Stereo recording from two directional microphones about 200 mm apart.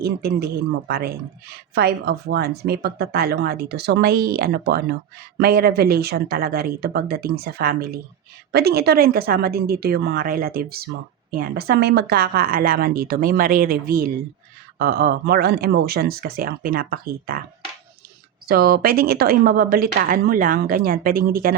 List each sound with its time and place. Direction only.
0.0 s speech: 50° right (ahead or behind)
18.4 s speech: 50° right (ahead or behind)